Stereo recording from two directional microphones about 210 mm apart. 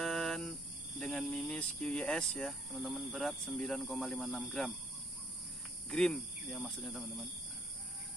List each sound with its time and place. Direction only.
0.0 s speech: centre (ahead or behind)
5.9 s speech: 5° left (ahead or behind)